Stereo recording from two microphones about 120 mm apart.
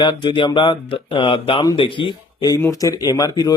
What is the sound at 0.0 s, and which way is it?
A man's voice, 40° left (ahead or behind).